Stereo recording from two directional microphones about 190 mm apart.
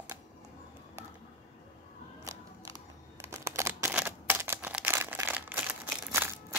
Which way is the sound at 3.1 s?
15° right (ahead or behind).